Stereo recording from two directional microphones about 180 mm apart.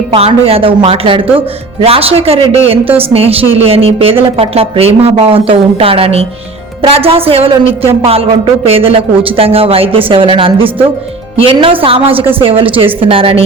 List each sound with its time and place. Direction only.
0.1 s a woman's voice: 30° right (ahead or behind)